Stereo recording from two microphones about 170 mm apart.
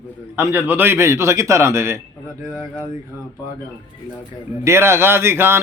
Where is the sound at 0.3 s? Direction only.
10° right (ahead or behind).